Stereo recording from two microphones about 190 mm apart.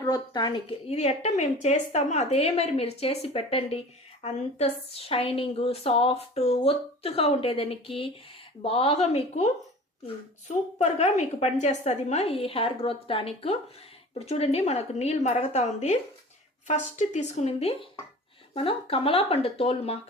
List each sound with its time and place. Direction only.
0.0 s a woman's voice: 20° left (ahead or behind)
10.5 s a woman's voice: 35° left (ahead or behind)